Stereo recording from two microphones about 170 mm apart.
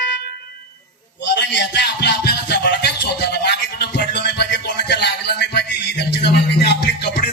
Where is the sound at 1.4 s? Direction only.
85° left.